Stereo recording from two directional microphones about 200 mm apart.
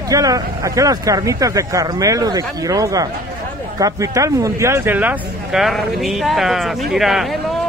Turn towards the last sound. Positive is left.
turn(degrees=0)  # may be behind; listen again after turning